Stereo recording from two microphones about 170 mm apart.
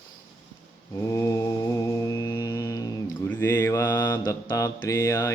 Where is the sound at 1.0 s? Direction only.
20° left (ahead or behind).